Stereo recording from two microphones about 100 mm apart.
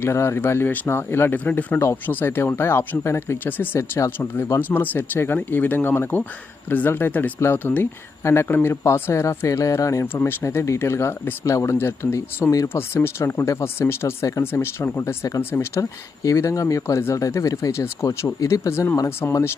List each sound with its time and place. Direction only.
0.0 s speech: 25° left (ahead or behind)